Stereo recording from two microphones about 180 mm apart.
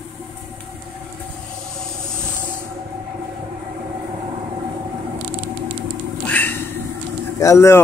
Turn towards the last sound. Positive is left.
turn(degrees=15)  # may be behind; listen again after turning